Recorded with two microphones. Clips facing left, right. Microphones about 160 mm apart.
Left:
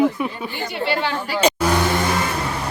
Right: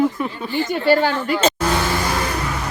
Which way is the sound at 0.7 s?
45° right (ahead or behind).